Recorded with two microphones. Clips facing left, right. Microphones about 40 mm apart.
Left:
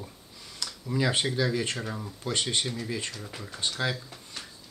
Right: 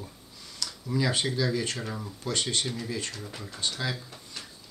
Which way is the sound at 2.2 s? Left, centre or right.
Left.